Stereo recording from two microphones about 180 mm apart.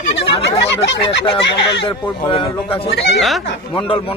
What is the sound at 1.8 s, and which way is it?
Speech, 25° left (ahead or behind).